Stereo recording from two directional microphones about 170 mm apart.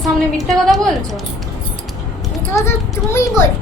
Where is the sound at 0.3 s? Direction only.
Centre (ahead or behind).